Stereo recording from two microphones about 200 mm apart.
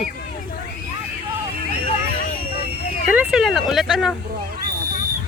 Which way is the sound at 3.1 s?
5° right (ahead or behind).